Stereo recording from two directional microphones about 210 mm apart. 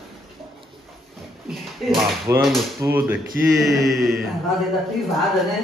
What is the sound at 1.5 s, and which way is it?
Speech, centre (ahead or behind).